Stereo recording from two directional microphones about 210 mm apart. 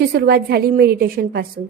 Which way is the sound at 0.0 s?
50° right (ahead or behind).